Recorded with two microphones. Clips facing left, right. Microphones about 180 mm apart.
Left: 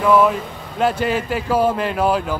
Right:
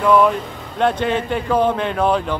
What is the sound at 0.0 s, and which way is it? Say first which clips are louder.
Speech: even; 5° left (ahead or behind).